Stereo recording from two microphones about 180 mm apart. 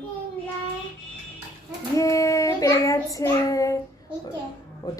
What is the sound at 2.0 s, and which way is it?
Child singing, 20° left (ahead or behind).